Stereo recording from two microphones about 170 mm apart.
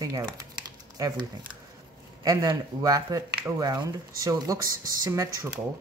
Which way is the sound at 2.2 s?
20° right (ahead or behind).